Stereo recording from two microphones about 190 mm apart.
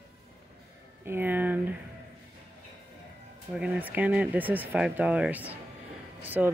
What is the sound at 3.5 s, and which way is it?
Speech, 10° right (ahead or behind).